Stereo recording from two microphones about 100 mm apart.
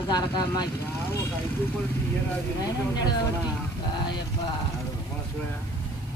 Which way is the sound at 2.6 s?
45° left (ahead or behind).